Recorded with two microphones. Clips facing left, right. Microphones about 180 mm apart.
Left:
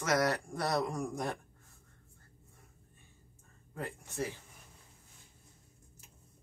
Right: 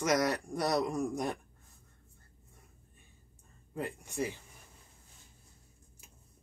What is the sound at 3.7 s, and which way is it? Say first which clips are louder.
Speech: right 3 dB; 15° right (ahead or behind).